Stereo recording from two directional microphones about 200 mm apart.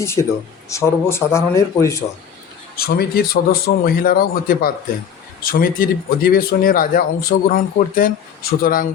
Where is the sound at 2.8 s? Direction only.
50° left (ahead or behind).